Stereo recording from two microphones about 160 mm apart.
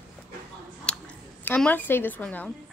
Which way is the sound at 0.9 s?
5° left (ahead or behind).